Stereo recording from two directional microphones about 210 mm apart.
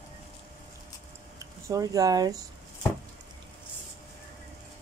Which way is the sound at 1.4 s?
15° right (ahead or behind).